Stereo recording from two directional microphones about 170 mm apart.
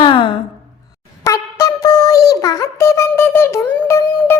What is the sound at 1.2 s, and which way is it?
Music, 20° left (ahead or behind).